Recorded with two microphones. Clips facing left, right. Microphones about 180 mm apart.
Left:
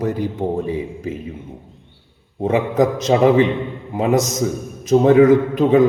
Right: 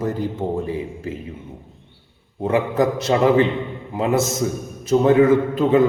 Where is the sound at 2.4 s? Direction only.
15° left (ahead or behind).